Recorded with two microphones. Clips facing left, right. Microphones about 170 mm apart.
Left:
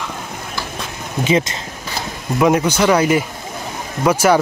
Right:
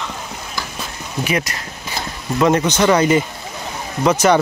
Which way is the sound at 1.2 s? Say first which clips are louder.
Left 5 dB; 25° left (ahead or behind).